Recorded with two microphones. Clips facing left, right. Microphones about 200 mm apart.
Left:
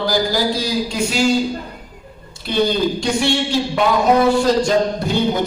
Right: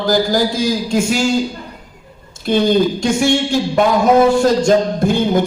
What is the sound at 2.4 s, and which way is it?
Speech, 45° right (ahead or behind).